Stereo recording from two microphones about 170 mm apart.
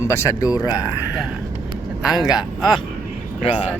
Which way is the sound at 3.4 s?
35° left (ahead or behind).